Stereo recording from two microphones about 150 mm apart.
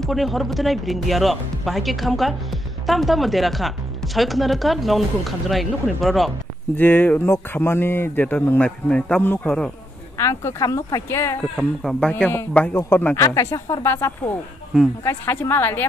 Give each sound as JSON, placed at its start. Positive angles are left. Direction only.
{"t": 0.0, "sound": "speech", "side_deg": 0}
{"t": 6.8, "sound": "speech", "side_deg": 15}
{"t": 10.1, "sound": "speech", "side_deg": 20}
{"t": 11.5, "sound": "speech", "side_deg": 5}